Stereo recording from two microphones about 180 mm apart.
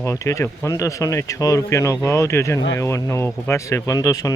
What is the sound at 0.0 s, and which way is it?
Speech, 15° left (ahead or behind).